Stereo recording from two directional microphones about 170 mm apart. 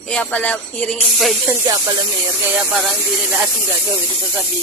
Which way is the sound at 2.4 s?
5° right (ahead or behind).